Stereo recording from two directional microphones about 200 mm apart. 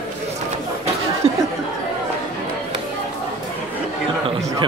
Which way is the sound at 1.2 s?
30° right (ahead or behind).